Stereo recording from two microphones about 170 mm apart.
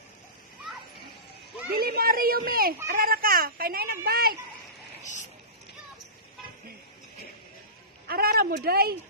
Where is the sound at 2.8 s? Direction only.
60° right (ahead or behind).